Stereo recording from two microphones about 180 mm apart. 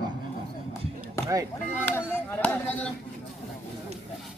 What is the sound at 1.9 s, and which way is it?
Speech, 10° left (ahead or behind).